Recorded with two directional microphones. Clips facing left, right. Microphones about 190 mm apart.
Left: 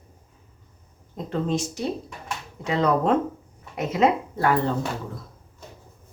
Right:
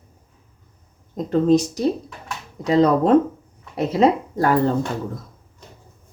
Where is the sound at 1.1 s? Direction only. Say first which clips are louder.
Right 9 dB; 40° right (ahead or behind).